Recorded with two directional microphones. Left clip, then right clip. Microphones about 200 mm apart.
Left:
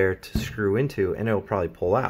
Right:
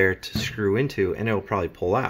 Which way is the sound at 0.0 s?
5° right (ahead or behind).